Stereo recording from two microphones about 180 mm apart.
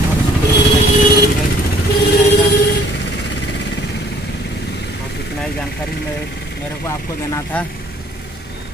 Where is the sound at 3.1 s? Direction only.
70° left (ahead or behind).